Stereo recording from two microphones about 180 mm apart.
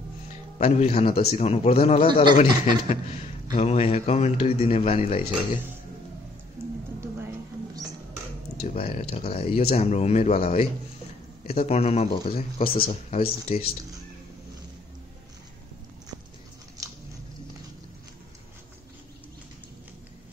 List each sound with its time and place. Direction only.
0.6 s a man's voice: 35° left (ahead or behind)
6.6 s a sound: 15° right (ahead or behind)
8.7 s a man's voice: 35° left (ahead or behind)
12.6 s a man's voice: 55° left (ahead or behind)
13.1 s a man's voice: 35° left (ahead or behind)
16.8 s biting: 20° right (ahead or behind)